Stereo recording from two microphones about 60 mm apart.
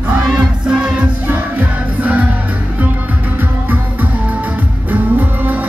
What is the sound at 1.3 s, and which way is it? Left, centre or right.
Music, right.